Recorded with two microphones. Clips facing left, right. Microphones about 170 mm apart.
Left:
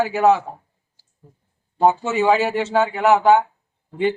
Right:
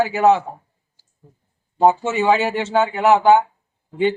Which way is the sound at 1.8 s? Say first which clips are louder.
Right 2 dB; 20° right (ahead or behind).